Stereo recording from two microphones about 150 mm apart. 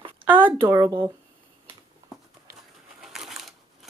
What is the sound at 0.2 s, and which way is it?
Speech, 15° right (ahead or behind).